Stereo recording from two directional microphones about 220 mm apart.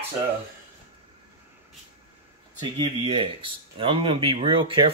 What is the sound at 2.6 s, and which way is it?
Speech, 20° right (ahead or behind).